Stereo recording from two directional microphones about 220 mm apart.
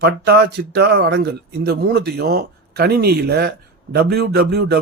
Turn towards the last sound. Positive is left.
turn(degrees=-50)  # may be behind; listen again after turning